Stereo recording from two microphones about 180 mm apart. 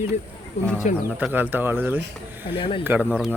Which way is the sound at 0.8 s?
45° left (ahead or behind).